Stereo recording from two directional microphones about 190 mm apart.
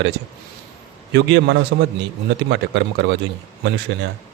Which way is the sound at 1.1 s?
65° right (ahead or behind).